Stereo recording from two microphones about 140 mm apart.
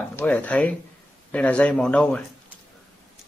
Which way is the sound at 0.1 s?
10° left (ahead or behind).